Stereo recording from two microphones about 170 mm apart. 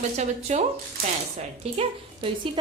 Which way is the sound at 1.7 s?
35° right (ahead or behind).